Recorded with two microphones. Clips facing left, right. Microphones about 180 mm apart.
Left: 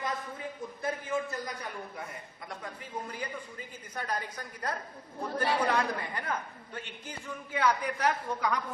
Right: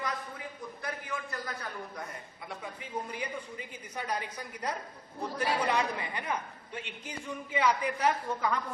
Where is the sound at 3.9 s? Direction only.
10° right (ahead or behind).